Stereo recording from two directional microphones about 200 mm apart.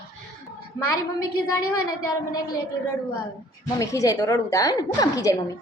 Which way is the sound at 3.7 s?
15° left (ahead or behind).